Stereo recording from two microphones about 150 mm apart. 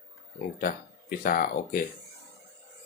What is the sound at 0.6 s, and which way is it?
Speech, 75° left (ahead or behind).